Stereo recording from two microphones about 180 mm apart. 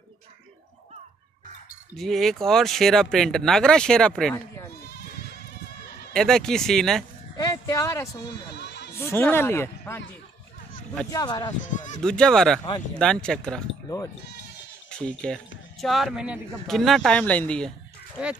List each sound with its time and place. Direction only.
2.0 s speech: centre (ahead or behind)
6.1 s speech: 5° left (ahead or behind)
7.3 s speech: 20° left (ahead or behind)
8.3 s speech: 70° left (ahead or behind)
8.9 s speech: 15° left (ahead or behind)
11.1 s speech: 20° left (ahead or behind)
11.6 s speech: 45° left (ahead or behind)
12.0 s speech: 5° left (ahead or behind)
14.9 s speech: 5° left (ahead or behind)
18.2 s speech: 5° right (ahead or behind)